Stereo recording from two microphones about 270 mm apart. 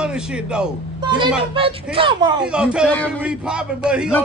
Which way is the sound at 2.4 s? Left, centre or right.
Centre.